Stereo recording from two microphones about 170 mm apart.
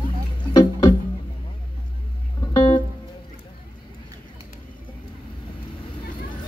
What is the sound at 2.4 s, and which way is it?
Music, 25° left (ahead or behind).